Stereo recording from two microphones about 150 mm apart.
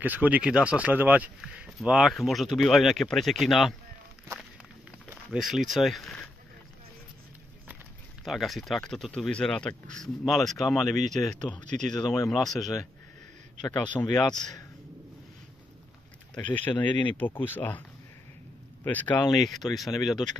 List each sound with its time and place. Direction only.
0.0 s speech: 10° right (ahead or behind)
5.1 s speech: 5° right (ahead or behind)
8.2 s speech: centre (ahead or behind)
11.6 s speech: 55° right (ahead or behind)
12.3 s speech: centre (ahead or behind)
13.7 s speech: 25° left (ahead or behind)
16.3 s speech: 10° left (ahead or behind)
18.9 s speech: 10° left (ahead or behind)